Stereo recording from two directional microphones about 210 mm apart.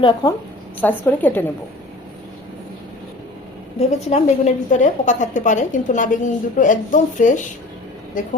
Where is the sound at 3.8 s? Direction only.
30° left (ahead or behind).